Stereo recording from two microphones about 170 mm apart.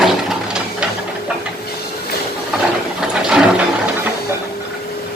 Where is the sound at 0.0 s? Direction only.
Centre (ahead or behind).